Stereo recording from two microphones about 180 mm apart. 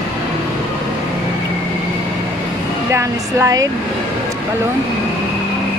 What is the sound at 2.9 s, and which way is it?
Speech, 15° right (ahead or behind).